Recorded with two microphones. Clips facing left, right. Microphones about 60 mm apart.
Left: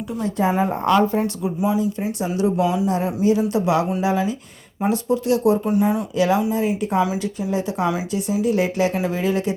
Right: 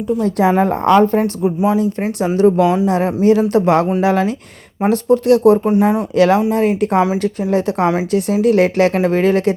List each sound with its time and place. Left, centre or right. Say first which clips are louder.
0.5 s a woman's voice: right 5 dB; right
2.8 s a woman's voice: right 6 dB; right